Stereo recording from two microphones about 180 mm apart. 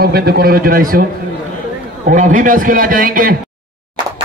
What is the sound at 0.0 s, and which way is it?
A man's voice, 60° right (ahead or behind).